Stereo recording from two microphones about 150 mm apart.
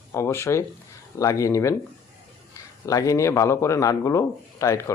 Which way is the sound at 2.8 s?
20° left (ahead or behind).